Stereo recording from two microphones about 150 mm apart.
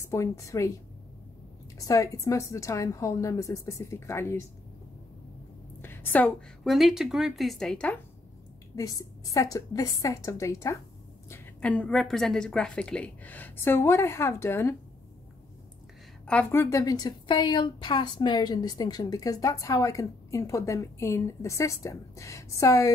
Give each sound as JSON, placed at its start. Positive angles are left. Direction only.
{"t": 0.0, "sound": "a woman's voice", "side_deg": 20}
{"t": 1.8, "sound": "a woman's voice", "side_deg": 20}
{"t": 5.8, "sound": "a woman's voice", "side_deg": 15}
{"t": 8.7, "sound": "a woman's voice", "side_deg": 25}
{"t": 16.3, "sound": "a woman's voice", "side_deg": 10}